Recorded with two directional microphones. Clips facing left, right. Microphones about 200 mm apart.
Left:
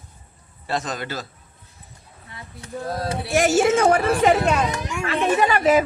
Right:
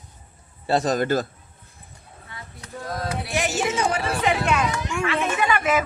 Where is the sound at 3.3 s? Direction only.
45° left (ahead or behind).